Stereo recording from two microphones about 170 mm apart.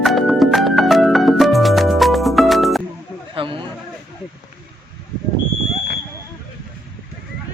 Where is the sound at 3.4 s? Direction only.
30° right (ahead or behind).